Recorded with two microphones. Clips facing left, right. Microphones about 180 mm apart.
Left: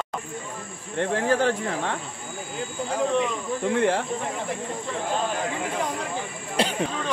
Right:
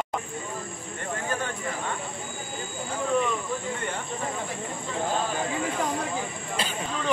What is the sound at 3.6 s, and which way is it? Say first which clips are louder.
Speech: left 10 dB; 85° left.